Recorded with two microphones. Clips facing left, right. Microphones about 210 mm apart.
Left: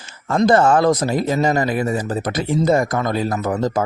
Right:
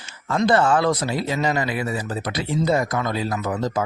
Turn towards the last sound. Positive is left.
turn(degrees=50)  # may be behind; listen again after turning